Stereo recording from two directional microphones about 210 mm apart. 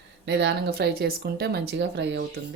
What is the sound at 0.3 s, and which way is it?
Speech, 55° right (ahead or behind).